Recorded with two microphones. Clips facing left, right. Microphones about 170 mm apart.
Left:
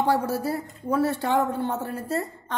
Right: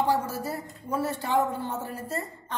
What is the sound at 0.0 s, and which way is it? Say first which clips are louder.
Speech: left 3 dB; 65° left (ahead or behind).